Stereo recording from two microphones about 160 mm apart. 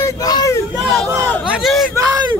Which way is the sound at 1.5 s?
Centre (ahead or behind).